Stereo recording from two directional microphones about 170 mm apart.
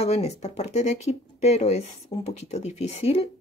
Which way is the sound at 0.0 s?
40° left (ahead or behind).